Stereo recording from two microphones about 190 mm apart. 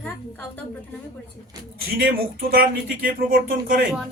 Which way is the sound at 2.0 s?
50° right (ahead or behind).